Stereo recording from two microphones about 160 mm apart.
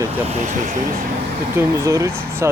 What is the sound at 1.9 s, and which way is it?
Speech, 20° right (ahead or behind).